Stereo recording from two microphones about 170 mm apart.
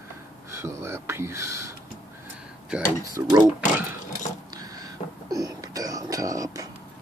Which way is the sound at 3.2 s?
15° right (ahead or behind).